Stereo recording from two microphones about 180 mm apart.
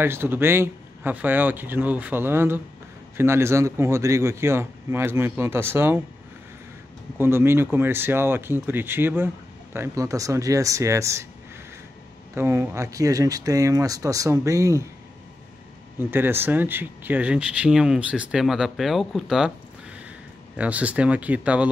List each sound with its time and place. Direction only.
0.0 s speech: 10° right (ahead or behind)
7.2 s speech: 10° right (ahead or behind)
12.4 s speech: 15° right (ahead or behind)
16.0 s speech: 10° right (ahead or behind)
20.5 s speech: 5° right (ahead or behind)